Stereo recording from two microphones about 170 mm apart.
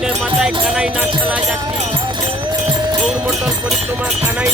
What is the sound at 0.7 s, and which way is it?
Speech, 5° right (ahead or behind).